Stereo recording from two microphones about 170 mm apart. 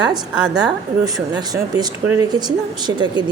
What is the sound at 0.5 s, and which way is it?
A woman's voice, 25° right (ahead or behind).